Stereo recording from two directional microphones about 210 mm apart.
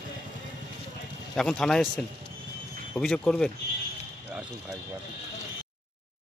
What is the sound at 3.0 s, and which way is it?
Speech, centre (ahead or behind).